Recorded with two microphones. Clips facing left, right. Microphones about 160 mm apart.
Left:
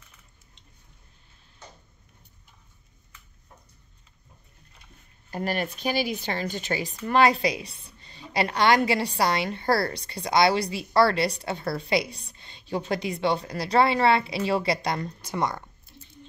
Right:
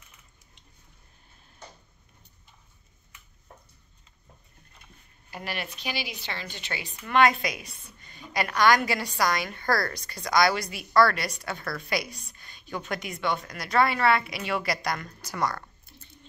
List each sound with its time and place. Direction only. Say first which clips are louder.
5.3 s a woman's voice: left 7 dB; 45° left (ahead or behind); by 15.6 s 25° left (ahead or behind)